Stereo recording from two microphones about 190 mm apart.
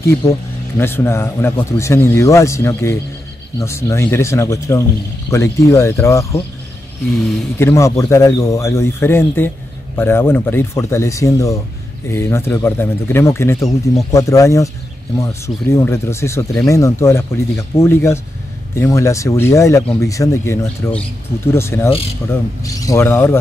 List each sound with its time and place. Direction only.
0.7 s speech: 10° left (ahead or behind)
7.5 s speech: 15° left (ahead or behind)
13.6 s speech: centre (ahead or behind)
14.1 s speech: 15° left (ahead or behind)